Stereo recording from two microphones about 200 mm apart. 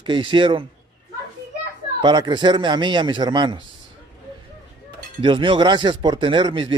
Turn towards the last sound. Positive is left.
turn(degrees=-25)  # may be behind; listen again after turning